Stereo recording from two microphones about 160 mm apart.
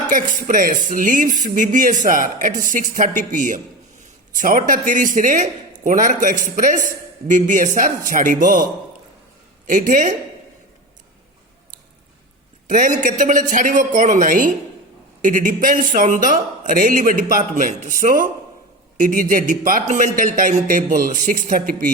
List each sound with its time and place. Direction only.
0.1 s speech: 55° right (ahead or behind)
9.6 s a woman's voice: 55° right (ahead or behind)
12.6 s a man's voice: 55° right (ahead or behind)